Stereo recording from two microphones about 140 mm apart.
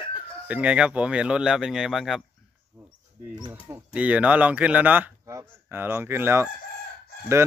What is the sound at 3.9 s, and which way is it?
A man's voice, 10° right (ahead or behind).